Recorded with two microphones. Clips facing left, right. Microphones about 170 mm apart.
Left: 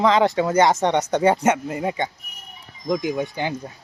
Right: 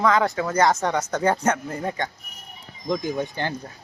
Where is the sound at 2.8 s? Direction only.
10° left (ahead or behind).